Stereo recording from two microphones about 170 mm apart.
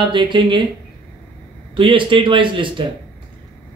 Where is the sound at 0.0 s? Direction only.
30° right (ahead or behind).